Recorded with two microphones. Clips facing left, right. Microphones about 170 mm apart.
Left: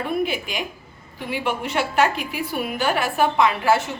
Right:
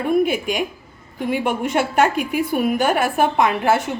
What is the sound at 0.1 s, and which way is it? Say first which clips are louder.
A woman's voice: right 9 dB; 50° right (ahead or behind).